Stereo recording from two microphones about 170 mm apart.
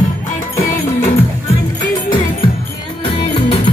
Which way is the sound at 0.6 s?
55° left (ahead or behind).